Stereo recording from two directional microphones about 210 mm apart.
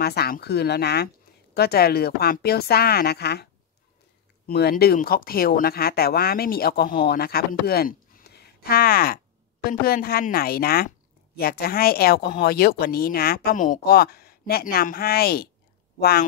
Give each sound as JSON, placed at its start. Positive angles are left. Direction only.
{"t": 0.0, "sound": "speech", "side_deg": 50}
{"t": 4.5, "sound": "speech", "side_deg": 50}